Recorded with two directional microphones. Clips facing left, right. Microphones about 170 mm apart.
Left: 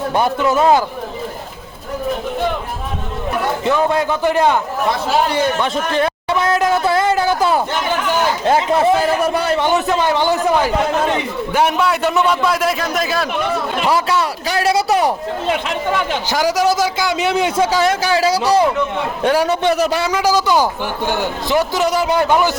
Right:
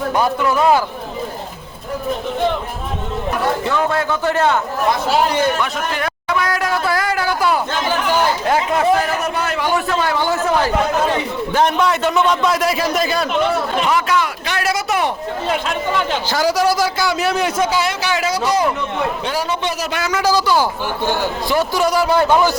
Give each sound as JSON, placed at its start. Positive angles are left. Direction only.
{"t": 0.4, "sound": "speech", "side_deg": 20}
{"t": 3.6, "sound": "a man's voice", "side_deg": 15}
{"t": 5.3, "sound": "a man's voice", "side_deg": 30}
{"t": 13.9, "sound": "a man's voice", "side_deg": 30}
{"t": 16.3, "sound": "speech", "side_deg": 15}
{"t": 17.7, "sound": "a man's voice", "side_deg": 45}
{"t": 19.2, "sound": "a man's voice", "side_deg": 65}
{"t": 20.1, "sound": "a man's voice", "side_deg": 15}